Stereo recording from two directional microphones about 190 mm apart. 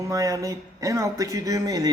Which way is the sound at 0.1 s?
15° right (ahead or behind).